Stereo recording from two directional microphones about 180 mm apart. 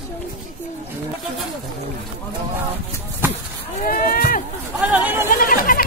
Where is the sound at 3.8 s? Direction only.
50° left (ahead or behind).